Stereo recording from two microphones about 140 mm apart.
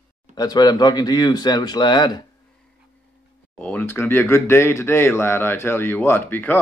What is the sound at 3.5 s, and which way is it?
Speech, 10° left (ahead or behind).